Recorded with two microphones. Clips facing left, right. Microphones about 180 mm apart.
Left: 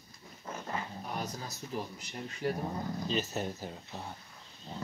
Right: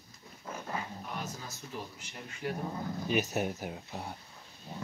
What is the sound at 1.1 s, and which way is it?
Speech, 35° left (ahead or behind).